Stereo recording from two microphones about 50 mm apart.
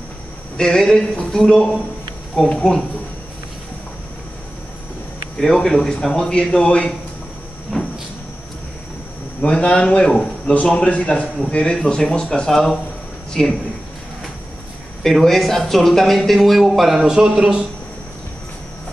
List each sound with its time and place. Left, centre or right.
0.6 s a man's voice: centre
5.4 s a man's voice: centre
7.7 s cupboard open or close: centre
9.4 s a man's voice: left
15.0 s speech: centre
16.9 s a man's voice: centre